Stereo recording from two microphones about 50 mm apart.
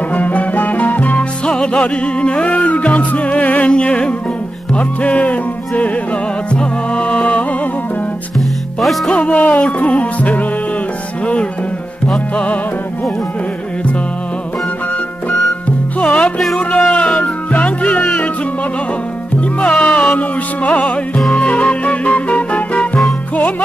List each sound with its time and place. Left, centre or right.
0.1 s music: left
1.4 s music: centre
9.1 s music: left
16.0 s music: left
19.6 s music: left